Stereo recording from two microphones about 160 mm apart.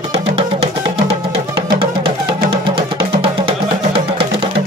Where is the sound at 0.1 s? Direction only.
40° right (ahead or behind).